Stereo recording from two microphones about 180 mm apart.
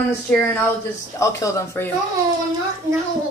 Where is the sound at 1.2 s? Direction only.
15° left (ahead or behind).